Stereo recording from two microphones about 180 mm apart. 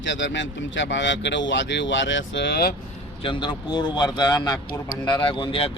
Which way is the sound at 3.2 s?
25° left (ahead or behind).